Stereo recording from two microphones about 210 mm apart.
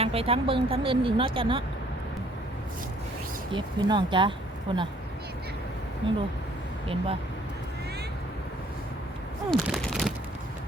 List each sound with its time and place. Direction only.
0.0 s speech: 25° right (ahead or behind)
3.5 s speech: 20° right (ahead or behind)
6.0 s speech: 25° right (ahead or behind)
9.5 s a sound: centre (ahead or behind)